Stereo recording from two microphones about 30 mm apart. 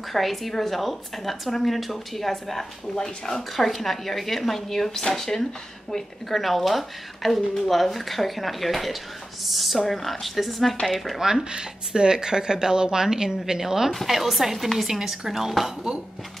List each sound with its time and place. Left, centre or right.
0.1 s speech: centre
11.5 s speech: right; by 14.9 s centre
14.9 s speech: centre